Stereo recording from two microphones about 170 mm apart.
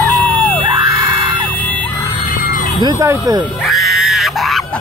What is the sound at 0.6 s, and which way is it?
Music, 30° right (ahead or behind).